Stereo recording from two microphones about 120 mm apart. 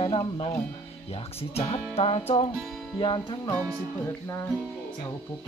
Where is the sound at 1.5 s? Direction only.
55° left (ahead or behind).